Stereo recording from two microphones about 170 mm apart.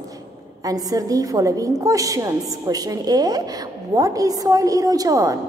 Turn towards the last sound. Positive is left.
turn(degrees=-20)  # may be behind; listen again after turning